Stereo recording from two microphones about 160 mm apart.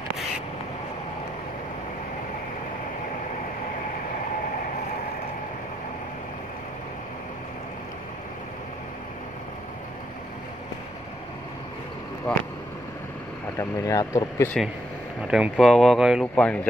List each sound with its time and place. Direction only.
12.3 s speech: 5° left (ahead or behind)
13.6 s speech: 20° left (ahead or behind)
15.2 s speech: 5° right (ahead or behind)
16.3 s speech: 10° left (ahead or behind)